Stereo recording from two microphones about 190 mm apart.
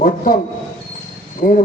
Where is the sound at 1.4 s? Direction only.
50° left (ahead or behind).